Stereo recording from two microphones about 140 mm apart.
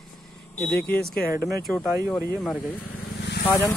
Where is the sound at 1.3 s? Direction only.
20° right (ahead or behind).